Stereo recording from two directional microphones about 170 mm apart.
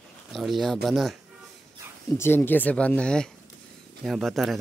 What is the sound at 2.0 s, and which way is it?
Speech, 15° left (ahead or behind).